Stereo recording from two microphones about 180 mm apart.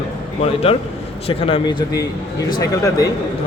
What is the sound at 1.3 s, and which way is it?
Speech, 30° left (ahead or behind).